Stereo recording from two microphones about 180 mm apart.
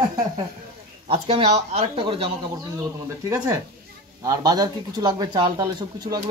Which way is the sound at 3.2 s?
15° right (ahead or behind).